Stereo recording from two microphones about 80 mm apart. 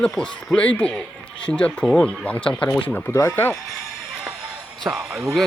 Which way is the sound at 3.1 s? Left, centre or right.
Left.